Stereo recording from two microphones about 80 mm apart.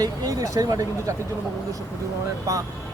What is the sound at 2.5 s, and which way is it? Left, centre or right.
Speech, right.